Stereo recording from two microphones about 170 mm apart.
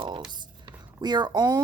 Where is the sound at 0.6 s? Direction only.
25° right (ahead or behind).